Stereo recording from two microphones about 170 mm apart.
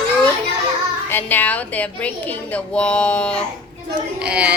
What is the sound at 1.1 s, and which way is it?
A woman's voice, 10° left (ahead or behind).